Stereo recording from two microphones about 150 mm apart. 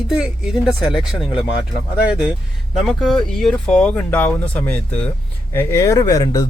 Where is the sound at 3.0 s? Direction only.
Centre (ahead or behind).